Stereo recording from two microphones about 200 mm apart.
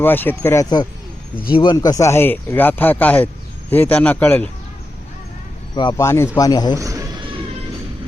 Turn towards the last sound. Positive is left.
turn(degrees=-20)  # may be behind; listen again after turning